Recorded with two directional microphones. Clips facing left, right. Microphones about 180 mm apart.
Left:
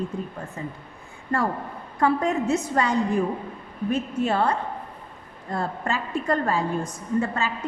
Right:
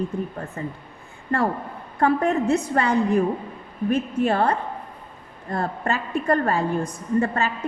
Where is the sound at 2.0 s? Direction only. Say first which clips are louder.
Right 2 dB; 60° right (ahead or behind).